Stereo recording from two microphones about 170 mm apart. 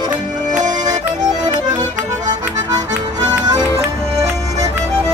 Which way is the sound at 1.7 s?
25° right (ahead or behind).